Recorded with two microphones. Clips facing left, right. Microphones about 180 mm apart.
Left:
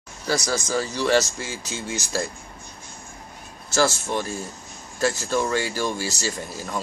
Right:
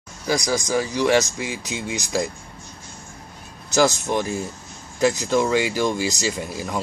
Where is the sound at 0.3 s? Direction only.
15° right (ahead or behind).